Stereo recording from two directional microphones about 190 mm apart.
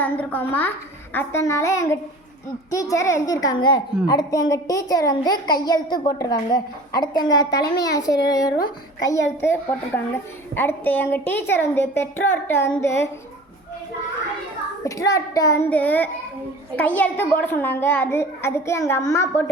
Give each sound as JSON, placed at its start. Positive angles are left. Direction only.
{"t": 0.0, "sound": "a child's voice", "side_deg": 10}
{"t": 14.8, "sound": "a child's voice", "side_deg": 15}